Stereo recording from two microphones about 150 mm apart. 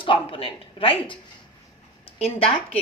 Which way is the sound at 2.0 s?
40° left (ahead or behind).